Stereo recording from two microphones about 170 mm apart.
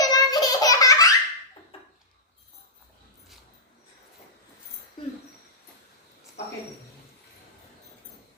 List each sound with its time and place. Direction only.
0.0 s laughter: 25° left (ahead or behind)